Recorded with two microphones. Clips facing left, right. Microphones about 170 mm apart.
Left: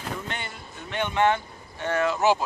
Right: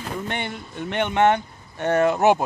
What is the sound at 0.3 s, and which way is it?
Speech, 60° right (ahead or behind).